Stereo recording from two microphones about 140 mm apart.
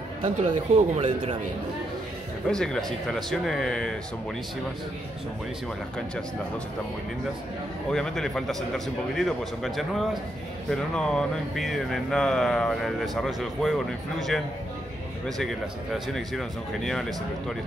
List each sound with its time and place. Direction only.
0.2 s speech: 50° right (ahead or behind)
2.4 s speech: 5° left (ahead or behind)
7.9 s speech: 5° left (ahead or behind)